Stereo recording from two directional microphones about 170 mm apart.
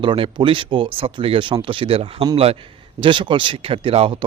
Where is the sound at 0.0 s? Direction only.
30° right (ahead or behind).